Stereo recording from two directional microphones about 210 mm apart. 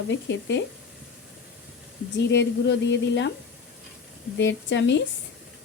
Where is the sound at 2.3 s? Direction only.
55° left (ahead or behind).